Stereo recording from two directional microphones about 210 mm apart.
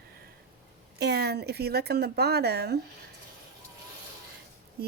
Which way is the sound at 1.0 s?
50° right (ahead or behind).